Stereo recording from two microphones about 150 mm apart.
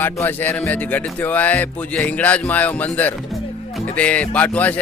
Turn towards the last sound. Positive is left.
turn(degrees=10)  # may be behind; listen again after turning